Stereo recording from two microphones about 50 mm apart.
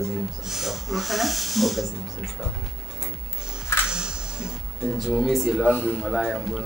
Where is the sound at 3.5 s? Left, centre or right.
Centre.